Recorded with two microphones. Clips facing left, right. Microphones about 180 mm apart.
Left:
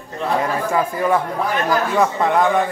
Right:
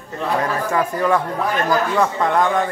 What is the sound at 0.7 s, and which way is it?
A man's voice, 10° left (ahead or behind).